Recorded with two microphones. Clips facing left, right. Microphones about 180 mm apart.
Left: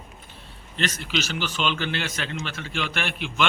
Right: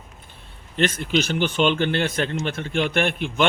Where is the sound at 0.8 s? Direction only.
50° right (ahead or behind).